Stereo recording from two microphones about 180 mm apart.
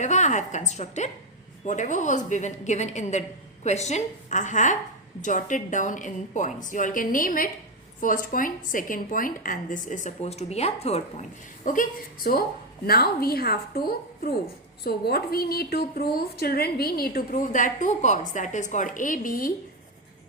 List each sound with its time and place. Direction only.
0.0 s a woman's voice: 40° left (ahead or behind)